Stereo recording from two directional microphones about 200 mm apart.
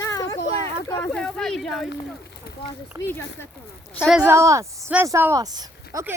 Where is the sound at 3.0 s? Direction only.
10° left (ahead or behind).